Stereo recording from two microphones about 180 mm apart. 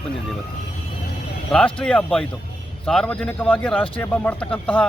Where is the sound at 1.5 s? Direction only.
5° left (ahead or behind).